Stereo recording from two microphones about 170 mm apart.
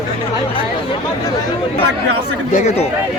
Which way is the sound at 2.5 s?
40° left (ahead or behind).